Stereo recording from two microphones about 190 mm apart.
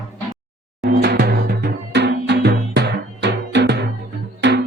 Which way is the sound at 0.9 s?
55° right (ahead or behind).